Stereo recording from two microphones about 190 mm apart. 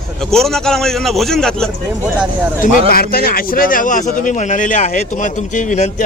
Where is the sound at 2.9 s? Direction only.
50° left (ahead or behind).